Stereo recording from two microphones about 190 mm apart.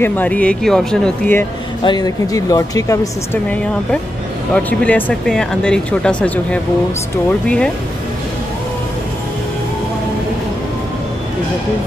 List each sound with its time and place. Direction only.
0.0 s speech: 10° left (ahead or behind)
1.9 s speech: 20° left (ahead or behind)
4.6 s speech: 10° left (ahead or behind)